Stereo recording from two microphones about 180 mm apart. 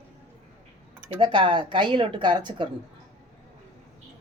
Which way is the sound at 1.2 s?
30° right (ahead or behind).